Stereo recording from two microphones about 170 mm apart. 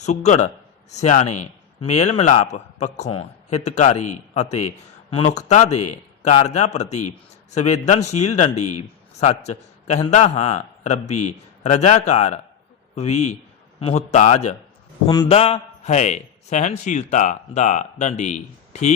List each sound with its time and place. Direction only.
0.0 s a man's voice: 40° left (ahead or behind)
15.0 s a man's voice: 25° left (ahead or behind); by 18.9 s 45° left (ahead or behind)